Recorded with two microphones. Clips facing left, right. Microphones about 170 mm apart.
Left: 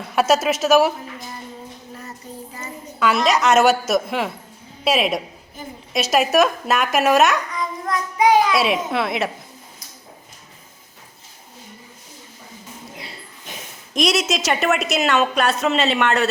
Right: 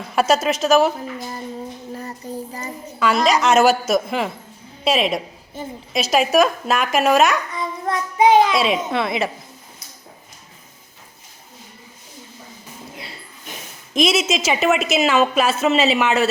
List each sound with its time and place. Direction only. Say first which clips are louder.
0.2 s a woman's voice: even; centre (ahead or behind)
2.0 s child singing: right 6 dB; 35° right (ahead or behind)
3.2 s a woman's voice: right 1 dB; centre (ahead or behind)
7.5 s child singing: right 1 dB; 30° right (ahead or behind)
8.5 s a woman's voice: even; centre (ahead or behind)
13.9 s a woman's voice: right 2 dB; centre (ahead or behind)